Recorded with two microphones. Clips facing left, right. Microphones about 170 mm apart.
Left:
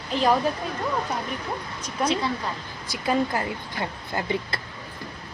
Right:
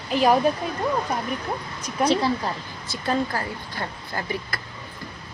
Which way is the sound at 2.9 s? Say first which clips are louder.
Left 1 dB; 15° left (ahead or behind).